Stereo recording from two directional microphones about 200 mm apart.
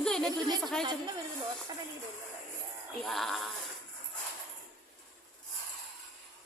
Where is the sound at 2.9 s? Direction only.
Centre (ahead or behind).